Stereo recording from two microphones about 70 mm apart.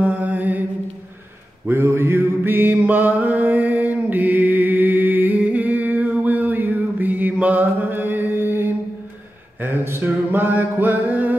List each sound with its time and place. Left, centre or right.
0.0 s mantra: right
1.7 s mantra: right
9.6 s a sound: right
9.9 s music: right